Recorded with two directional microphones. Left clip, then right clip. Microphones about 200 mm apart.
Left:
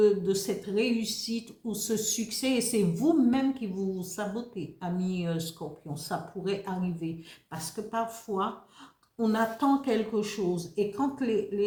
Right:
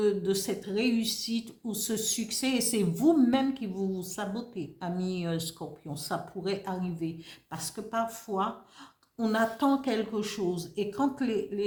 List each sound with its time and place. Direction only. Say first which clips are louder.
0.0 s speech: left 3 dB; 40° right (ahead or behind)